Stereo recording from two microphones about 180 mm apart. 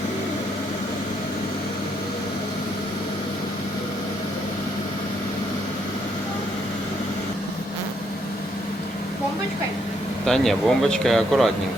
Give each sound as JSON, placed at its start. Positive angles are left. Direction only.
{"t": 10.2, "sound": "speech", "side_deg": 0}